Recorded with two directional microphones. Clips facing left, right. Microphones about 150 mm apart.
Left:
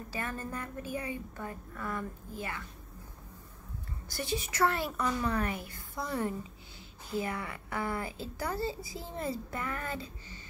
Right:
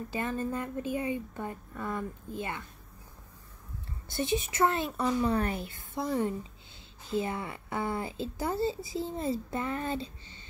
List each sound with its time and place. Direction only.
0.1 s a woman's voice: 20° right (ahead or behind)
4.1 s a woman's voice: 20° right (ahead or behind)